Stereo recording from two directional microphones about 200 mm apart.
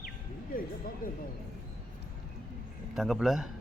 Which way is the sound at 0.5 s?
45° left (ahead or behind).